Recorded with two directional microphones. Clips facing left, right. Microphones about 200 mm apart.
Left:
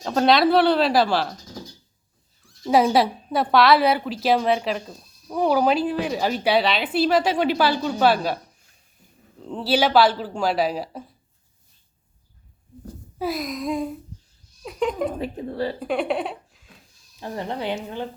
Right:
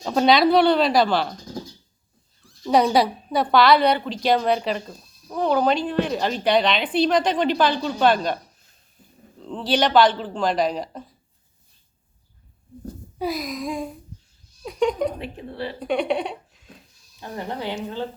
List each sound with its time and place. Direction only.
0.0 s a woman's voice: 5° right (ahead or behind)
2.6 s a woman's voice: 5° left (ahead or behind)
13.1 s a woman's voice: centre (ahead or behind)
15.2 s speech: 40° left (ahead or behind)
15.8 s a sound: centre (ahead or behind)
17.2 s speech: 20° left (ahead or behind)